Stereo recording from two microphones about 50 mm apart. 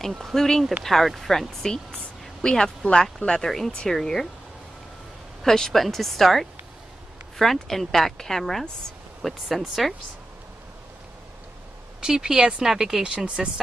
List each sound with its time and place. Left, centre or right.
0.2 s speech: centre
5.4 s speech: centre
12.0 s speech: centre